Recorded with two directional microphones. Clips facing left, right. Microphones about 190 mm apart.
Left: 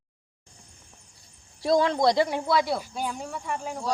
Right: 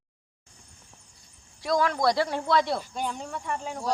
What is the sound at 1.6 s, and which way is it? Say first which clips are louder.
Speech: left 3 dB; 25° left (ahead or behind).